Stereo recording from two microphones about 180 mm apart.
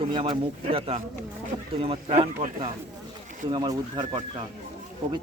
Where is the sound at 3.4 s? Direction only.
25° right (ahead or behind).